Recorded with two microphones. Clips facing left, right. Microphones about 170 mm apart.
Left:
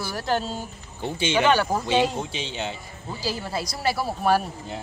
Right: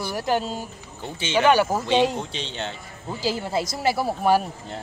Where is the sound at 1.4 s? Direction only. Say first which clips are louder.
Right 4 dB; 10° right (ahead or behind).